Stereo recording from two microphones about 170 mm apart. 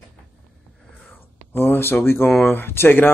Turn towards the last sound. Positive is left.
turn(degrees=10)  # may be behind; listen again after turning